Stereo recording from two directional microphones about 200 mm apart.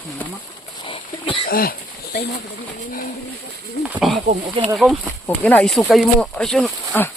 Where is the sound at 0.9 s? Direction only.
25° left (ahead or behind).